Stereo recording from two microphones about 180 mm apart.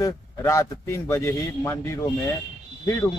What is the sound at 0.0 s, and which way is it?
A man's voice, 15° left (ahead or behind).